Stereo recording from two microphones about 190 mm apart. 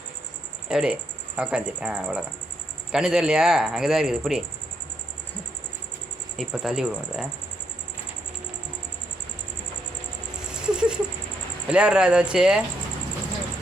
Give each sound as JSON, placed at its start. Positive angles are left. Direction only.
{"t": 0.7, "sound": "speech", "side_deg": -5}
{"t": 6.3, "sound": "speech", "side_deg": 0}
{"t": 10.5, "sound": "a sound", "side_deg": -5}
{"t": 11.7, "sound": "speech", "side_deg": -5}